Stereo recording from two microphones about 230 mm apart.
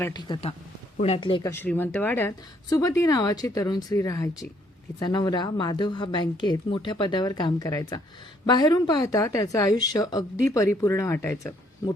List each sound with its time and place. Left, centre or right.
0.0 s speech: centre